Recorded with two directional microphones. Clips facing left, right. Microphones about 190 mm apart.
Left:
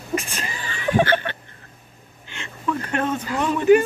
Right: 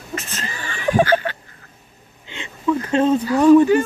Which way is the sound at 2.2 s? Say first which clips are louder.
Right 6 dB; 20° right (ahead or behind).